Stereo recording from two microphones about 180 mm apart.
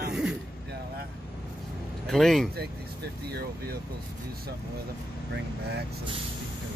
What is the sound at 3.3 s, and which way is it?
Speech, 60° right (ahead or behind).